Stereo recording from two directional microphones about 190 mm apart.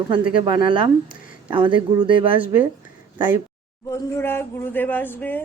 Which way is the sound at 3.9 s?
15° left (ahead or behind).